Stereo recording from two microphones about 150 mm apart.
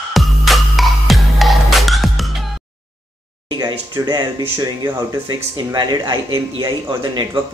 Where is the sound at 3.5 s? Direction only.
30° right (ahead or behind).